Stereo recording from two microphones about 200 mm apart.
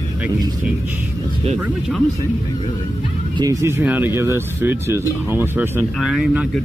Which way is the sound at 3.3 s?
15° right (ahead or behind).